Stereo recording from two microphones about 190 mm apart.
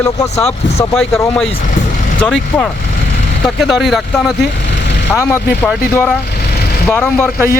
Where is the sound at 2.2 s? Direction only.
5° left (ahead or behind).